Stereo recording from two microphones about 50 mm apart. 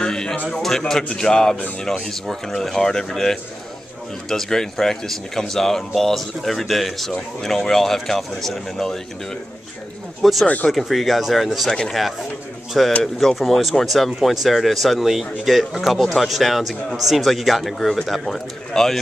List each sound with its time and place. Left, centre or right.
0.0 s a sound: centre
0.5 s speech: centre
10.4 s speech: left
10.7 s speech: centre
13.0 s speech: centre